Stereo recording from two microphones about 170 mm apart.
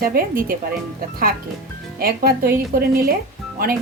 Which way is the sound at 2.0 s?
65° right (ahead or behind).